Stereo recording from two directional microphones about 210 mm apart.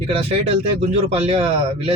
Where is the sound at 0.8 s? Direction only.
30° right (ahead or behind).